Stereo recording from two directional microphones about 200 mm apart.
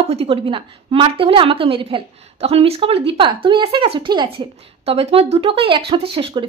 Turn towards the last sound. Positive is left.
turn(degrees=-25)  # may be behind; listen again after turning